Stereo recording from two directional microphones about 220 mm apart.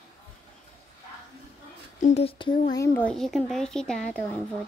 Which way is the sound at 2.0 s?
30° left (ahead or behind).